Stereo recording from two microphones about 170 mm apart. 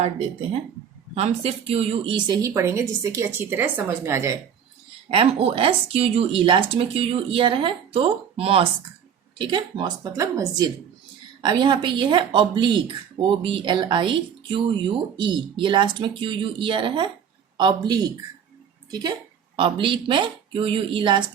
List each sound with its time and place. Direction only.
1.1 s speech: 35° right (ahead or behind); by 4.4 s 15° right (ahead or behind)
5.1 s a woman's voice: 35° right (ahead or behind)